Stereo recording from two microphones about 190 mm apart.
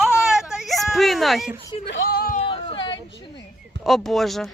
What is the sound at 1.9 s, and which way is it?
Speech, 55° left (ahead or behind).